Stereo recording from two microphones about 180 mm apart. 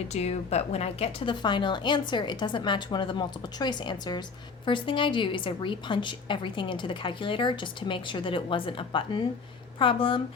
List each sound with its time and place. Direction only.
0.1 s a woman's voice: 35° left (ahead or behind)